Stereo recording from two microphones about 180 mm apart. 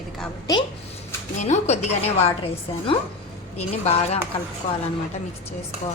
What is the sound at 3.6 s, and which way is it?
Speech, 35° left (ahead or behind).